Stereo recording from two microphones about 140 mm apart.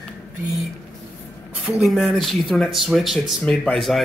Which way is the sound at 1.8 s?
Centre (ahead or behind).